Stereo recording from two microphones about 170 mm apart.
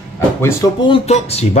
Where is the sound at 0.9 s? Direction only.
40° left (ahead or behind).